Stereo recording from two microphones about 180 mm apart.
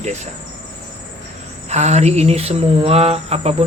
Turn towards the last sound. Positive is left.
turn(degrees=-35)  # may be behind; listen again after turning